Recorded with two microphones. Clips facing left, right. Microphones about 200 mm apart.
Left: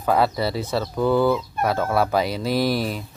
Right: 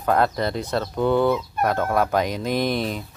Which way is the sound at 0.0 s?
5° left (ahead or behind).